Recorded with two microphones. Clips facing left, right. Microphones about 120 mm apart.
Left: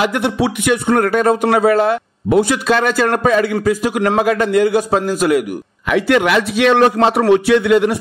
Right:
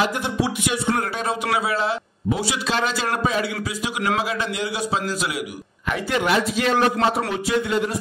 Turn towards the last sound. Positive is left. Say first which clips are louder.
# left 10 dB
turn(degrees=70)  # may be behind; listen again after turning